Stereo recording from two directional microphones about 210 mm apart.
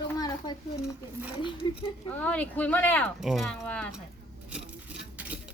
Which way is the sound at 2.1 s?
5° left (ahead or behind).